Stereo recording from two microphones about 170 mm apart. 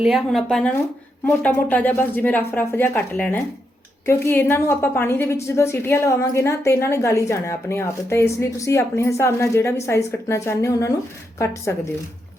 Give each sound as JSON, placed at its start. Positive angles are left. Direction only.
{"t": 0.0, "sound": "a woman's voice", "side_deg": 0}